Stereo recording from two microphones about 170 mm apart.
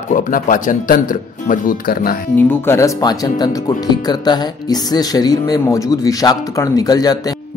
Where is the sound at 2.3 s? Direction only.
15° left (ahead or behind).